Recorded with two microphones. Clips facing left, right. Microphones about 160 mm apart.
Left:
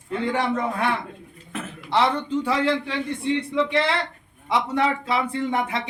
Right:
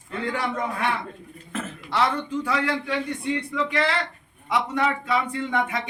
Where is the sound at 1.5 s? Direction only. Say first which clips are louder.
Left 2 dB; 15° left (ahead or behind).